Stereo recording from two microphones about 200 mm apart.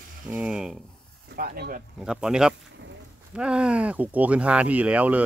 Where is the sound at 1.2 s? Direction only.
50° right (ahead or behind).